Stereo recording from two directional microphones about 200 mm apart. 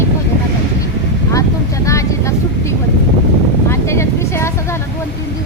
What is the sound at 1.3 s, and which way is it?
Speech, 15° left (ahead or behind).